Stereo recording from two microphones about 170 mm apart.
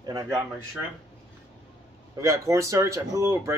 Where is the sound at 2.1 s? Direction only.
20° right (ahead or behind).